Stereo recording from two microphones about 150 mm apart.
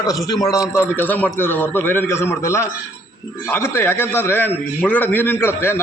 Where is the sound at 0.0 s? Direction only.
25° left (ahead or behind).